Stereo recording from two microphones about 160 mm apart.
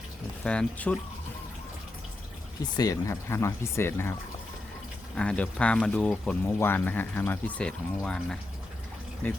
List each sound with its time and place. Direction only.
0.4 s speech: 5° left (ahead or behind)
2.7 s speech: 20° left (ahead or behind)
5.1 s speech: 5° left (ahead or behind)